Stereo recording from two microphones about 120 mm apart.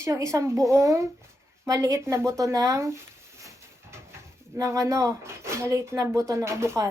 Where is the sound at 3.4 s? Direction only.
25° right (ahead or behind).